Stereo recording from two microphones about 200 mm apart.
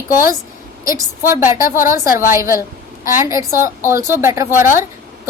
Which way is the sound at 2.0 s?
45° left (ahead or behind).